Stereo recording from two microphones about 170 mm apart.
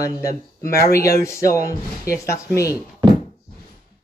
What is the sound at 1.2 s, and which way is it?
Speech, 15° left (ahead or behind).